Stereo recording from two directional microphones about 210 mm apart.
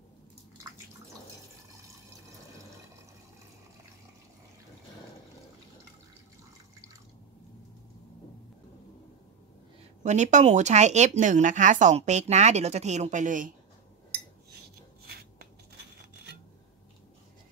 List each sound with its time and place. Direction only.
10.0 s speech: 35° right (ahead or behind)